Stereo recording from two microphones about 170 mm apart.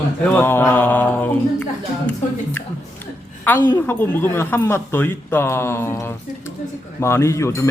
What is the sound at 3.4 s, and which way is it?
A woman's voice, 10° left (ahead or behind).